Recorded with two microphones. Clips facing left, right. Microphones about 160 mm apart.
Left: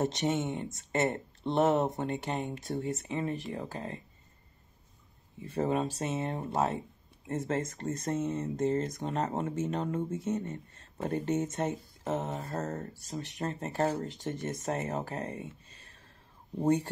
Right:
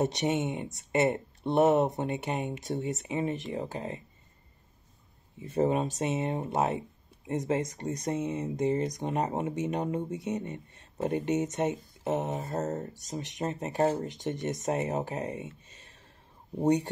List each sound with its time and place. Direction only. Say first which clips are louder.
0.0 s speech: right 2 dB; 15° right (ahead or behind)
5.4 s speech: right 3 dB; 20° right (ahead or behind)
16.5 s speech: right 2 dB; 15° right (ahead or behind)